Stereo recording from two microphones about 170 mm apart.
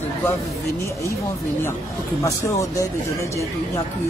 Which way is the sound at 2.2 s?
20° left (ahead or behind).